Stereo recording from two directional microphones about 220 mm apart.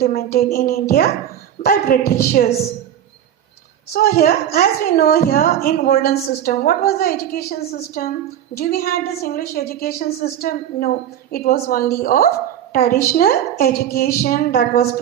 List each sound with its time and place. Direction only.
0.0 s a woman's voice: 45° left (ahead or behind)
3.9 s a woman's voice: 40° left (ahead or behind)
8.5 s a woman's voice: 40° left (ahead or behind)